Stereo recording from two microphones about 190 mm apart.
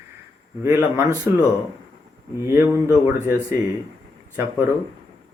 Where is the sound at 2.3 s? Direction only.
15° right (ahead or behind).